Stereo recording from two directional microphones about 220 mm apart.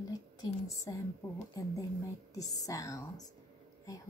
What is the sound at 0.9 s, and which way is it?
Speech, 15° left (ahead or behind).